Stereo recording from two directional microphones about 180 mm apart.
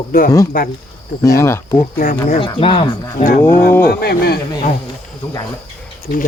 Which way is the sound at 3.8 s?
60° left (ahead or behind).